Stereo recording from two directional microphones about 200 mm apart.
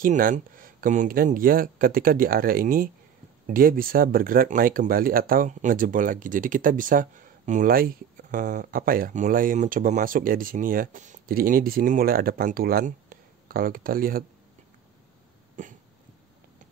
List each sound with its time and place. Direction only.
0.0 s speech: 45° right (ahead or behind)
15.6 s cough: 40° right (ahead or behind)